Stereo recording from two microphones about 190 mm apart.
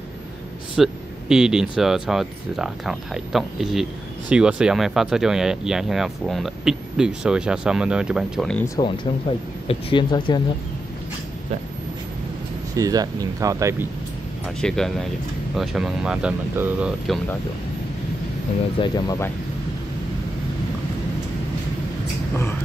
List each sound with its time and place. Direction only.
0.8 s speech: centre (ahead or behind)
8.7 s speech: 25° left (ahead or behind)
12.7 s speech: 20° right (ahead or behind)
14.6 s speech: centre (ahead or behind)
18.8 s speech: 20° left (ahead or behind)